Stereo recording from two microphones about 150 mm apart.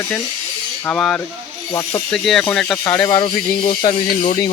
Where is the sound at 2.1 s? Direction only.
Centre (ahead or behind).